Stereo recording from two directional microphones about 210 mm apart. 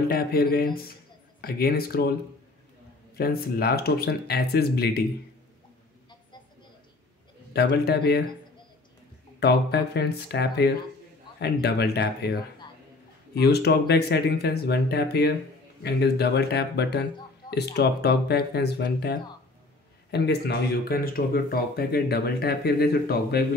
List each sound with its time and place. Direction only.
0.1 s speech: 45° left (ahead or behind)
3.2 s speech: 45° left (ahead or behind)
7.5 s speech: 50° left (ahead or behind)
9.4 s speech: 50° left (ahead or behind)